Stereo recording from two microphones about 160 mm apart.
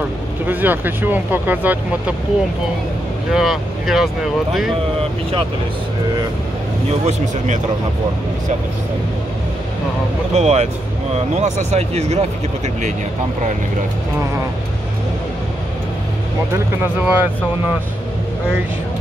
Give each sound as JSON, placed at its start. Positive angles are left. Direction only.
{"t": 0.5, "sound": "speech", "side_deg": -10}
{"t": 3.3, "sound": "speech", "side_deg": 0}
{"t": 7.1, "sound": "speech", "side_deg": -50}
{"t": 10.3, "sound": "speech", "side_deg": -45}
{"t": 16.5, "sound": "speech", "side_deg": -15}